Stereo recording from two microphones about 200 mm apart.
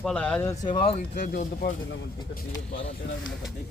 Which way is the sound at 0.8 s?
35° left (ahead or behind).